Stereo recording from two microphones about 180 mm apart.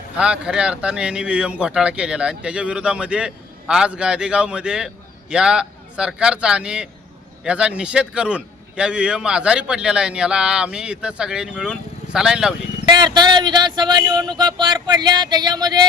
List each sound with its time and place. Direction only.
0.2 s a man's voice: 5° right (ahead or behind)
12.9 s speech: 25° right (ahead or behind)